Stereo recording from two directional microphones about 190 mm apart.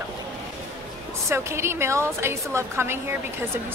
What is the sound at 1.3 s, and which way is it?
A woman's voice, 15° right (ahead or behind).